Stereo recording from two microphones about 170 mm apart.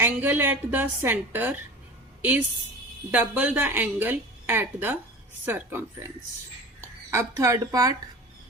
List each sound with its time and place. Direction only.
0.0 s a woman's voice: 10° right (ahead or behind)
3.1 s a woman's voice: 10° right (ahead or behind)